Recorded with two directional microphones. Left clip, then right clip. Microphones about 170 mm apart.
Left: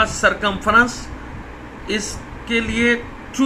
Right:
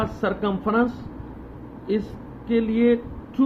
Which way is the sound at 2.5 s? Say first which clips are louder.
Left 3 dB; 45° right (ahead or behind).